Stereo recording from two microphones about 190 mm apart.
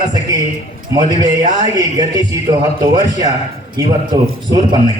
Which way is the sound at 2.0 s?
20° right (ahead or behind).